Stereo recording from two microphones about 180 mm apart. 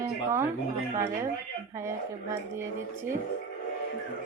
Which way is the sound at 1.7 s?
15° right (ahead or behind).